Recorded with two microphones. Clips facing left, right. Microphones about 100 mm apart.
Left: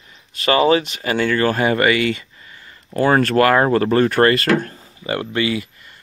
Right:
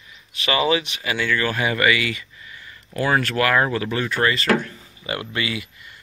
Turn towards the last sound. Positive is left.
turn(degrees=35)  # may be behind; listen again after turning